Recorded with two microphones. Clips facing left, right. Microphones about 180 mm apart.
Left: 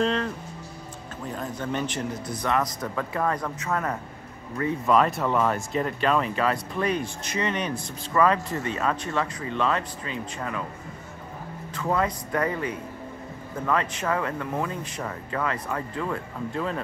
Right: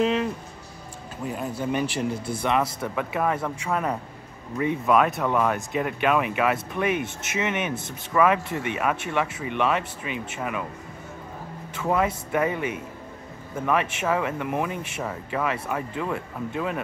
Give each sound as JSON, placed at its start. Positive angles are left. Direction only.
{"t": 0.0, "sound": "music", "side_deg": -10}
{"t": 1.2, "sound": "speech", "side_deg": -10}
{"t": 2.0, "sound": "speech", "side_deg": -25}
{"t": 2.6, "sound": "speech", "side_deg": -10}
{"t": 4.8, "sound": "speech", "side_deg": -5}
{"t": 6.9, "sound": "speech", "side_deg": -20}
{"t": 8.1, "sound": "speech", "side_deg": -10}
{"t": 11.8, "sound": "speech", "side_deg": -15}